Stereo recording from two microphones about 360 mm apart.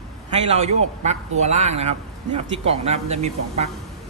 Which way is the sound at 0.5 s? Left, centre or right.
Centre.